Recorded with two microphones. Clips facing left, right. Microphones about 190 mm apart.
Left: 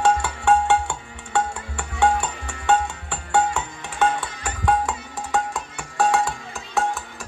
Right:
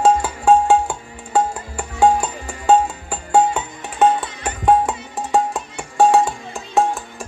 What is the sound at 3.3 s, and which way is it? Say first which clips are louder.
Music: right 5 dB; 25° right (ahead or behind).